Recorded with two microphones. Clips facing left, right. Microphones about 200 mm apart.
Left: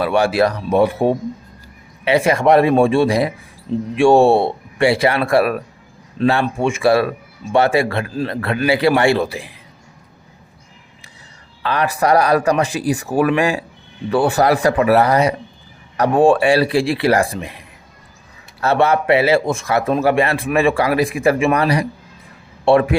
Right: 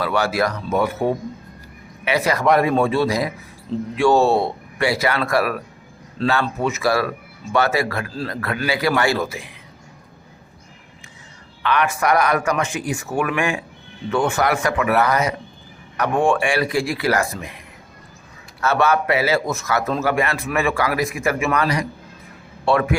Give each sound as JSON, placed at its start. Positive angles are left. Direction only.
{"t": 0.0, "sound": "a man's voice", "side_deg": 30}
{"t": 11.6, "sound": "speech", "side_deg": 35}
{"t": 18.6, "sound": "a man's voice", "side_deg": 30}